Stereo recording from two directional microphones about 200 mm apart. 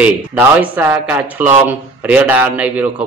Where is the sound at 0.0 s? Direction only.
10° right (ahead or behind).